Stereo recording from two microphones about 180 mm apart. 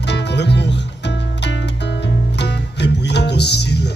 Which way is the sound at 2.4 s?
70° left (ahead or behind).